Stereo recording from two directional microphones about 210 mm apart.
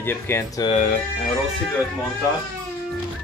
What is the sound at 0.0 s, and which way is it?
Speech, 10° left (ahead or behind).